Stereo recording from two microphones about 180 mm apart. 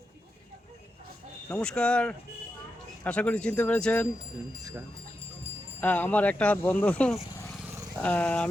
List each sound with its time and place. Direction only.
1.5 s speech: 5° left (ahead or behind)
5.8 s speech: 10° left (ahead or behind)